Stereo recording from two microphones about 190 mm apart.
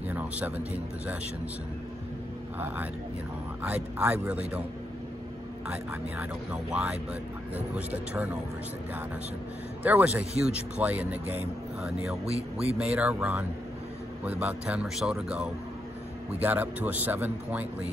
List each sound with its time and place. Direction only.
0.1 s a sound: 10° right (ahead or behind)
3.6 s speech: 10° right (ahead or behind)
5.7 s speech: 5° right (ahead or behind)
9.8 s speech: 10° right (ahead or behind)
12.3 s a man's voice: 30° right (ahead or behind)
12.7 s speech: 5° right (ahead or behind)